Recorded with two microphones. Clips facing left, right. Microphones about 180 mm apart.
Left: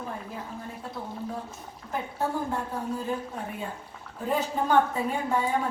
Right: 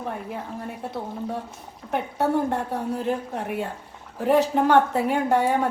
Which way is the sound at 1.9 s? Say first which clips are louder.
Right 7 dB; 75° right (ahead or behind).